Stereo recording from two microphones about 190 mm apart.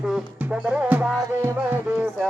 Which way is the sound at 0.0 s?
5° right (ahead or behind).